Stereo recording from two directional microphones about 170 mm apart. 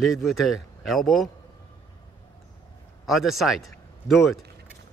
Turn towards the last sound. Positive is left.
turn(degrees=0)  # may be behind; listen again after turning